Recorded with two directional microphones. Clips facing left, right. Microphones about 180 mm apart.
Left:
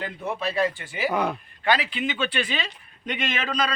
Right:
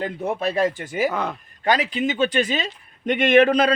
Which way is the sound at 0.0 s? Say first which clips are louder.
Right 5 dB; 50° right (ahead or behind).